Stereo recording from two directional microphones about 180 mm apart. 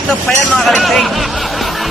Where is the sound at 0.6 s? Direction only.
Centre (ahead or behind).